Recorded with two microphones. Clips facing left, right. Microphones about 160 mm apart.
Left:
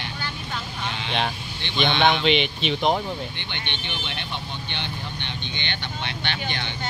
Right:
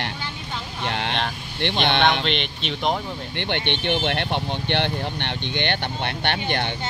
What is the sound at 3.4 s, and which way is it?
Speech, 65° right (ahead or behind).